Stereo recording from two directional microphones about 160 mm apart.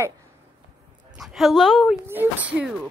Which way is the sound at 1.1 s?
Centre (ahead or behind).